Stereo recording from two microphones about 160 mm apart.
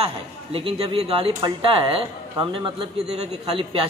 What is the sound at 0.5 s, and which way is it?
Speech, 35° right (ahead or behind).